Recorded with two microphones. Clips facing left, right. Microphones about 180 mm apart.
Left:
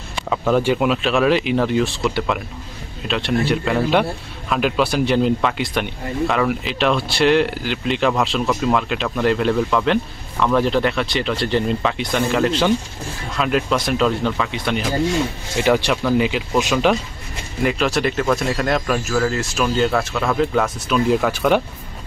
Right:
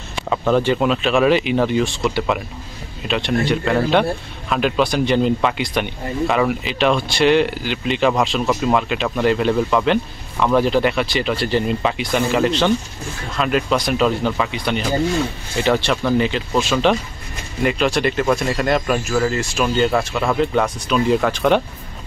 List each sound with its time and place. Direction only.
0.3 s a man's voice: 5° left (ahead or behind)
17.6 s a man's voice: centre (ahead or behind)